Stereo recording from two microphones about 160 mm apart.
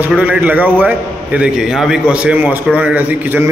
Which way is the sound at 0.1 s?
10° right (ahead or behind).